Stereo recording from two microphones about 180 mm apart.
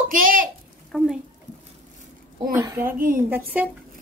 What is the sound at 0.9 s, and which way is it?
Speech, centre (ahead or behind).